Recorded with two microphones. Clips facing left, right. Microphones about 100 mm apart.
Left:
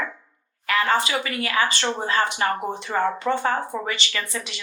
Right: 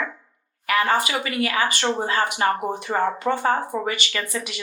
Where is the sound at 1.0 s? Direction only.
30° left (ahead or behind).